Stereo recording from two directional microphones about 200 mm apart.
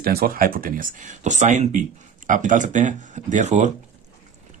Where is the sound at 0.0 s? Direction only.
50° right (ahead or behind).